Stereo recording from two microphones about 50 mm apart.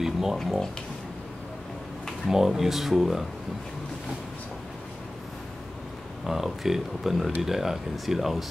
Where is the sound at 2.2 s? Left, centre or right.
Centre.